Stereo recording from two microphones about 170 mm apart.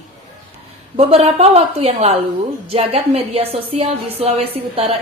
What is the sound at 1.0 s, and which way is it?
A woman's voice, 35° right (ahead or behind).